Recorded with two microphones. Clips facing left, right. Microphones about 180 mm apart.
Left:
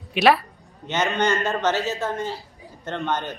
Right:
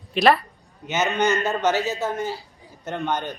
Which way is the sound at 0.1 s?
5° left (ahead or behind).